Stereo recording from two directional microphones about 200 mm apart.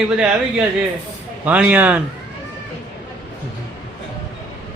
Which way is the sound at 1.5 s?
10° right (ahead or behind).